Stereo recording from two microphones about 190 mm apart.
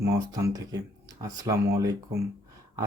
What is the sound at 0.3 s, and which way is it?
Speech, 20° right (ahead or behind).